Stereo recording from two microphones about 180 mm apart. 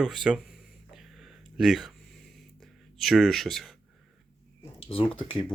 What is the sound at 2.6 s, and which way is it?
Speech, centre (ahead or behind).